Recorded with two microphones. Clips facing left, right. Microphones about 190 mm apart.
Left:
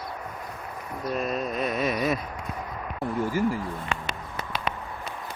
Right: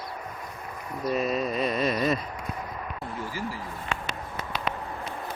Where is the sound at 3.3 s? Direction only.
50° left (ahead or behind).